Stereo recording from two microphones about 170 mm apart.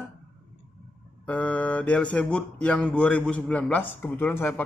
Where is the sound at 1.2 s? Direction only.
10° left (ahead or behind).